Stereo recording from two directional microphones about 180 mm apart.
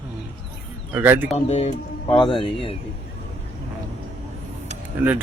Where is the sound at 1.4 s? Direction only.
35° left (ahead or behind).